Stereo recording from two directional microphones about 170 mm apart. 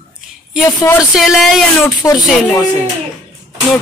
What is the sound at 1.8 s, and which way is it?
Speech, 20° left (ahead or behind).